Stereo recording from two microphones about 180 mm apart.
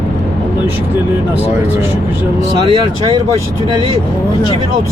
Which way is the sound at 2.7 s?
30° right (ahead or behind).